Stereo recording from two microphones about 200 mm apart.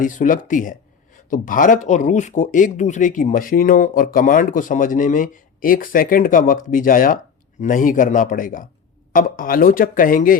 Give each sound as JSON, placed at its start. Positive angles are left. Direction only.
{"t": 0.0, "sound": "speech", "side_deg": 40}